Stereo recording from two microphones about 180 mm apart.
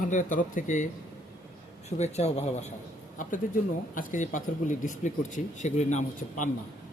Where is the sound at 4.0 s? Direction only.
45° left (ahead or behind).